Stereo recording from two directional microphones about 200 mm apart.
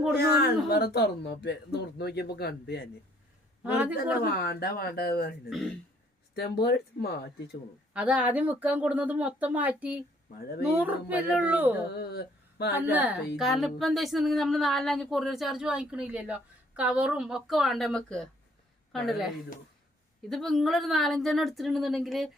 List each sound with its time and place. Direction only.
0.7 s speech: 55° left (ahead or behind)
3.6 s speech: 10° right (ahead or behind)
4.2 s speech: 50° left (ahead or behind)
5.5 s speech: centre (ahead or behind)
6.3 s speech: 50° left (ahead or behind)
7.9 s speech: 5° right (ahead or behind)
11.9 s speech: 55° left (ahead or behind)
12.7 s speech: 10° right (ahead or behind)
20.3 s speech: centre (ahead or behind)